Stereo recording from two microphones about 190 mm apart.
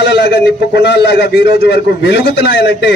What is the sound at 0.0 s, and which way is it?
A man's voice, 65° left (ahead or behind).